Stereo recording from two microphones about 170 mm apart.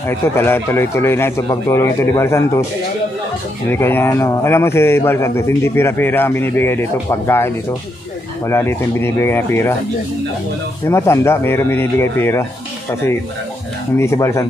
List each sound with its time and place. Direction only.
0.1 s a man's voice: 15° left (ahead or behind)
3.7 s a man's voice: 15° left (ahead or behind)
10.9 s a man's voice: 15° left (ahead or behind)
13.9 s a man's voice: 15° left (ahead or behind)